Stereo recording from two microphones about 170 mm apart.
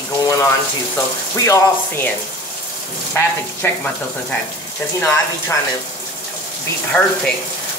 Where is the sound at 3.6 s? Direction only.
10° left (ahead or behind).